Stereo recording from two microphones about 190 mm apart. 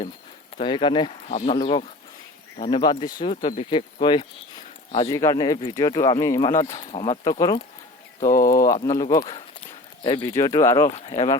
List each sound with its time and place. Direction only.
0.6 s speech: 25° left (ahead or behind)
1.3 s speech: 40° left (ahead or behind)
1.5 s speech: 25° left (ahead or behind)
6.5 s speech: 40° left (ahead or behind); by 10.9 s 20° left (ahead or behind)
10.9 s speech: 35° left (ahead or behind)